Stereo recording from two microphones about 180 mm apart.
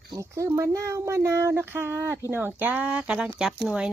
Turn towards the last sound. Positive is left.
turn(degrees=0)  # may be behind; listen again after turning